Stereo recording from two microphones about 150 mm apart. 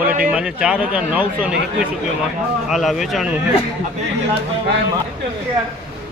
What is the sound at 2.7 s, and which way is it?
Speech, centre (ahead or behind).